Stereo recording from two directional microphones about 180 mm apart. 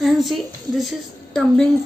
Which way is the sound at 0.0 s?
Centre (ahead or behind).